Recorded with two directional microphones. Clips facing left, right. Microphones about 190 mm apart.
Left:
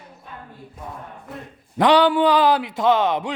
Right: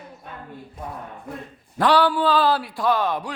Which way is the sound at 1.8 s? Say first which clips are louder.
Left 3 dB; 20° left (ahead or behind).